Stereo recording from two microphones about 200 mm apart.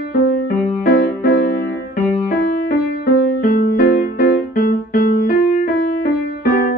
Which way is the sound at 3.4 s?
45° left (ahead or behind).